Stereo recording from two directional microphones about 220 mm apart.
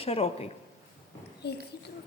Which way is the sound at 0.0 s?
25° left (ahead or behind).